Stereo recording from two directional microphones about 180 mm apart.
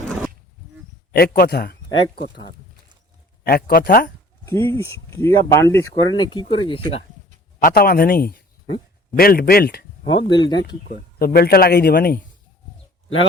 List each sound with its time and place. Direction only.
1.1 s speech: 60° left (ahead or behind)
1.9 s speech: 25° left (ahead or behind)
3.4 s speech: 55° left (ahead or behind)
4.4 s speech: 15° left (ahead or behind); by 7.0 s 30° left (ahead or behind)
7.6 s speech: 55° left (ahead or behind)
10.1 s speech: 25° left (ahead or behind)
10.8 s speech: 55° left (ahead or behind)